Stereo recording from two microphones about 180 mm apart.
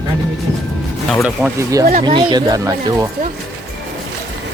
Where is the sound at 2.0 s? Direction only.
25° right (ahead or behind).